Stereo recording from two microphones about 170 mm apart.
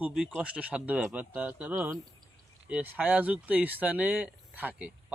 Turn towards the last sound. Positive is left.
turn(degrees=-10)  # may be behind; listen again after turning